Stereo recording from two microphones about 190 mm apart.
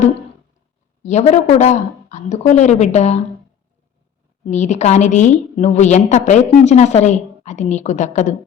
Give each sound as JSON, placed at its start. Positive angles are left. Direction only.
{"t": 1.0, "sound": "a woman's voice", "side_deg": 35}
{"t": 4.4, "sound": "a woman's voice", "side_deg": 35}